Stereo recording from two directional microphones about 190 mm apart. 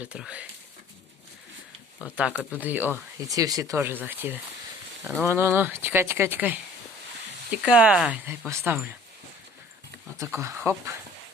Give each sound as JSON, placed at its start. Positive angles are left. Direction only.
{"t": 0.0, "sound": "speech", "side_deg": -5}
{"t": 2.1, "sound": "speech", "side_deg": -5}
{"t": 10.2, "sound": "speech", "side_deg": -15}